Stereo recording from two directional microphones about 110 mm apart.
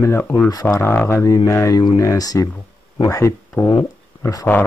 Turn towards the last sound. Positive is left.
turn(degrees=30)  # may be behind; listen again after turning